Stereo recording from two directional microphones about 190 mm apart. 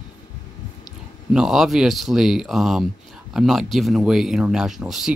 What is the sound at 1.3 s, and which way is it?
Speech, 5° right (ahead or behind).